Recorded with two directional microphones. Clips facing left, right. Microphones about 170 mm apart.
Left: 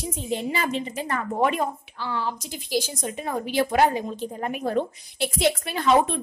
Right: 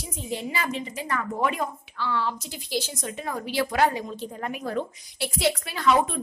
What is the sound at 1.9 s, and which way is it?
A woman's voice, 15° left (ahead or behind).